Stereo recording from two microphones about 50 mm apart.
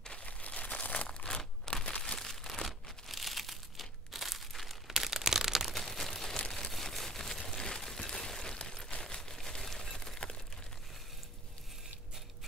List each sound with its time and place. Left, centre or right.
0.0 s crumpling: left
1.2 s crumpling: centre
2.1 s crumpling: centre
6.3 s a sound: centre